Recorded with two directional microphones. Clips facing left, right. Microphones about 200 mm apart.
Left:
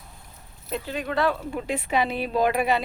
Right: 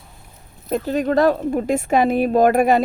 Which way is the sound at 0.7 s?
45° right (ahead or behind).